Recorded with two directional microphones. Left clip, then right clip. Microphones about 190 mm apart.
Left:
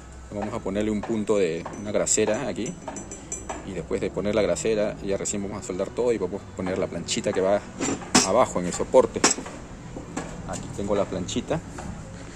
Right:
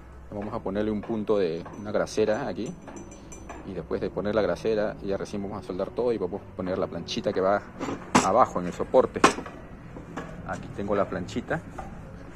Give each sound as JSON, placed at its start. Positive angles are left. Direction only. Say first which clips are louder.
{"t": 0.5, "sound": "speech", "louder": "left 1 dB", "side_deg": 5}
{"t": 3.7, "sound": "speech", "louder": "left 2 dB", "side_deg": 0}
{"t": 10.5, "sound": "speech", "louder": "left 1 dB", "side_deg": 0}
{"t": 11.3, "sound": "speech", "louder": "left 3 dB", "side_deg": 15}